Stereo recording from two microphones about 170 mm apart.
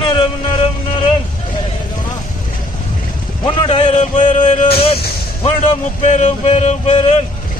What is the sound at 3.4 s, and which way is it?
Music, 40° left (ahead or behind).